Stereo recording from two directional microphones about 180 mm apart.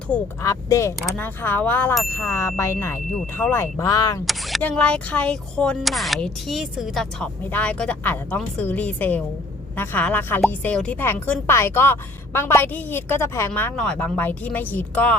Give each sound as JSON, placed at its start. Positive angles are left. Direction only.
{"t": 0.1, "sound": "a woman's voice", "side_deg": 5}
{"t": 0.4, "sound": "a woman's voice", "side_deg": 15}
{"t": 4.3, "sound": "a woman's voice", "side_deg": 0}